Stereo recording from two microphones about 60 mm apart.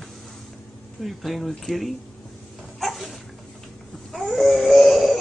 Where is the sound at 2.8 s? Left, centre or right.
Centre.